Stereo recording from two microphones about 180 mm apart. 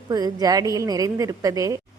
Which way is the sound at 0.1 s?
20° right (ahead or behind).